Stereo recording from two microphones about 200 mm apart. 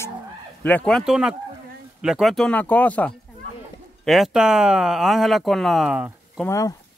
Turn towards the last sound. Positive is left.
turn(degrees=15)  # may be behind; listen again after turning